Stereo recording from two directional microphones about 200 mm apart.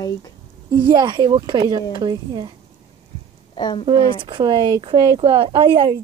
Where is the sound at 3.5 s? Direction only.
25° left (ahead or behind).